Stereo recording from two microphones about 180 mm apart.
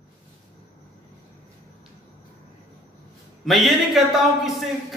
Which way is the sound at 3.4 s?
Centre (ahead or behind).